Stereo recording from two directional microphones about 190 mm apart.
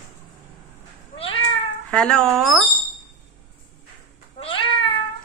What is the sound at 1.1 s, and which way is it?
Cat, 30° left (ahead or behind).